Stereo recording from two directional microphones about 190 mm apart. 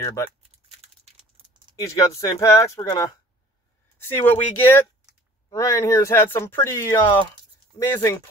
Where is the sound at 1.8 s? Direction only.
15° left (ahead or behind).